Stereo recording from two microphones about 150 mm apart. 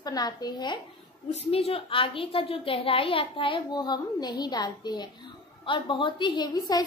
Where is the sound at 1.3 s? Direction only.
45° left (ahead or behind).